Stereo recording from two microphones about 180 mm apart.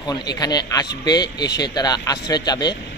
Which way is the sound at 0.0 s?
20° left (ahead or behind).